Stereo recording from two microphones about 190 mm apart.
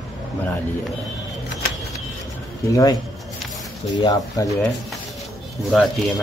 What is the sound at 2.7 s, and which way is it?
Speech, 20° left (ahead or behind).